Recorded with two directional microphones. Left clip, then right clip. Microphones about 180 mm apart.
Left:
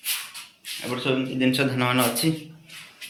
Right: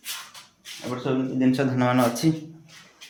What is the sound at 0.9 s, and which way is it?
Speech, 35° right (ahead or behind).